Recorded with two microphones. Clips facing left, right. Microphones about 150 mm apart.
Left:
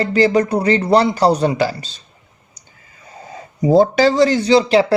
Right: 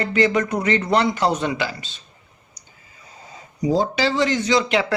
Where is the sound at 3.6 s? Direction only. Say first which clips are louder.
Left 8 dB; 55° left (ahead or behind); by 4.8 s 30° left (ahead or behind).